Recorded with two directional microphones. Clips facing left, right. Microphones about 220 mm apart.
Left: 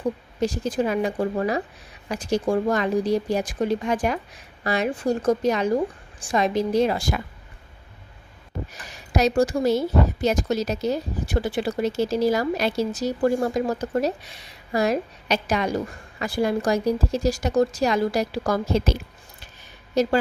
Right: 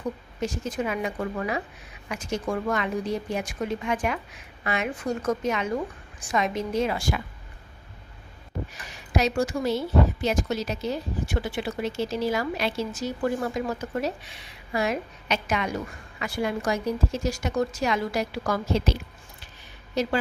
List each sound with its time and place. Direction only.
0.3 s a woman's voice: 35° left (ahead or behind)
9.1 s a woman's voice: 35° left (ahead or behind)
20.0 s a woman's voice: 40° left (ahead or behind)